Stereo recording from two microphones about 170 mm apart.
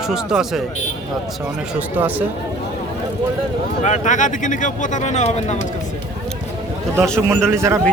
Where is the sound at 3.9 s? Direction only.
45° left (ahead or behind).